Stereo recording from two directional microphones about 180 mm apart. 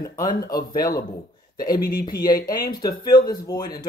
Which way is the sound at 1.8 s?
55° left (ahead or behind).